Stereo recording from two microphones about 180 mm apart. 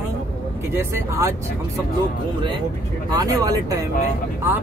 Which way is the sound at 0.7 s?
15° right (ahead or behind).